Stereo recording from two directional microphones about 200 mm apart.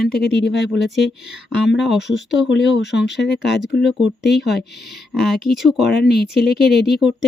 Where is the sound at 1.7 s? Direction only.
Centre (ahead or behind).